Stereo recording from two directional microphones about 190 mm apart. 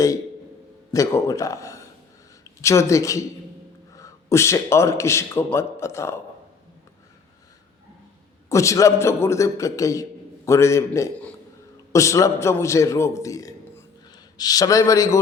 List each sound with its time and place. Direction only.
0.9 s a man's voice: 15° left (ahead or behind)
8.4 s a man's voice: 15° left (ahead or behind)